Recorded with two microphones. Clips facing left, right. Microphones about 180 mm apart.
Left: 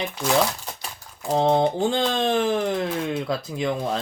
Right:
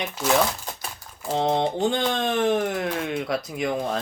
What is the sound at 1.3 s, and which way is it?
Speech, 35° left (ahead or behind).